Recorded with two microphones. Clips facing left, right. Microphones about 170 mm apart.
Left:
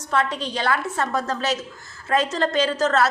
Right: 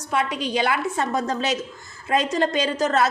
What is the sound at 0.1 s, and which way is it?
A woman's voice, 15° right (ahead or behind).